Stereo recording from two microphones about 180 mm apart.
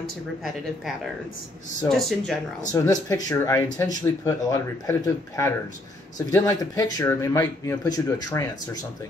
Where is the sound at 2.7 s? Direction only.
15° left (ahead or behind).